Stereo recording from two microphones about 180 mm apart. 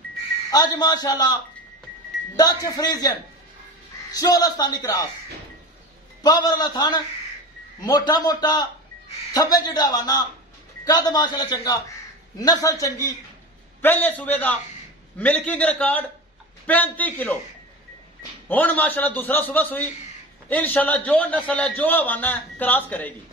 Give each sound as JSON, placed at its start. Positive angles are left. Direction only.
{"t": 0.7, "sound": "a man's voice", "side_deg": 25}
{"t": 6.2, "sound": "a man's voice", "side_deg": 20}
{"t": 18.5, "sound": "a man's voice", "side_deg": 10}